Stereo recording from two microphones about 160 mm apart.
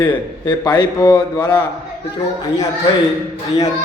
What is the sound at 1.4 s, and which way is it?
Speech, 10° left (ahead or behind).